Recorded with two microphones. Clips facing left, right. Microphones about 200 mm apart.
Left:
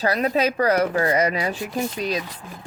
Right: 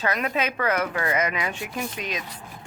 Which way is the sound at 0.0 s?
35° left (ahead or behind).